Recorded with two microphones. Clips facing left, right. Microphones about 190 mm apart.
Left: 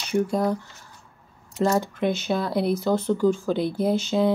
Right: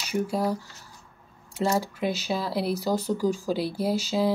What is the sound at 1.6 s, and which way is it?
Speech, 5° right (ahead or behind).